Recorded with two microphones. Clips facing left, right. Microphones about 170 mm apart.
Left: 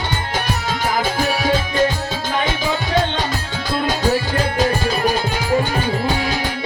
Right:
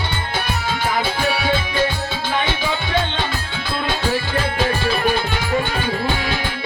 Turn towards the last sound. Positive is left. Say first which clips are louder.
# left 2 dB
turn(degrees=40)  # may be behind; listen again after turning